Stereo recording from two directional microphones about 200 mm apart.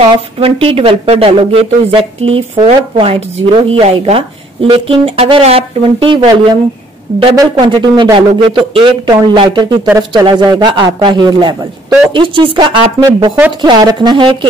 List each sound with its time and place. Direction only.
0.0 s speech: 30° right (ahead or behind)